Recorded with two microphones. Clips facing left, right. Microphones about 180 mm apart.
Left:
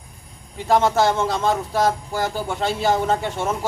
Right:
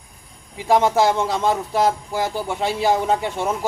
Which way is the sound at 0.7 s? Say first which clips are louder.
Right 1 dB; 15° right (ahead or behind).